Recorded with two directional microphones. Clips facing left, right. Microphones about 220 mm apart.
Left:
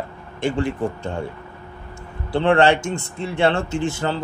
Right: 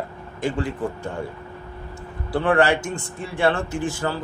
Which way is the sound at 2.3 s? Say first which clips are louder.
Left 3 dB; 25° left (ahead or behind).